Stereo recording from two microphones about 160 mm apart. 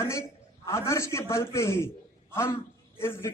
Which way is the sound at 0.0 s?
20° left (ahead or behind).